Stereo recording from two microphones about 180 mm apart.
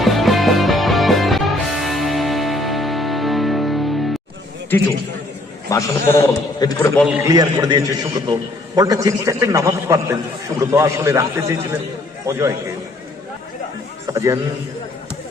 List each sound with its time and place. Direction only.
0.0 s music: centre (ahead or behind)
5.7 s a man's voice: 20° left (ahead or behind)
7.1 s a man's voice: 15° right (ahead or behind)
14.1 s a man's voice: 15° right (ahead or behind)